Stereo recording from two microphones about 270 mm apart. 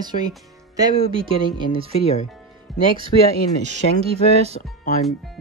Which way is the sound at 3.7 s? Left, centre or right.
Right.